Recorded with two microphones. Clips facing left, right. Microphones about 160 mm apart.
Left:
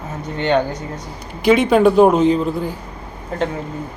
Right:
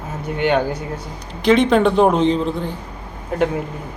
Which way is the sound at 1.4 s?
5° left (ahead or behind).